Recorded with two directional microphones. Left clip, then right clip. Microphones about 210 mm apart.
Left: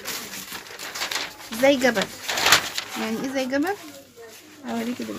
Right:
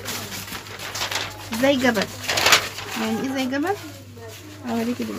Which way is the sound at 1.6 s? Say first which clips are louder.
Left 1 dB; 40° left (ahead or behind).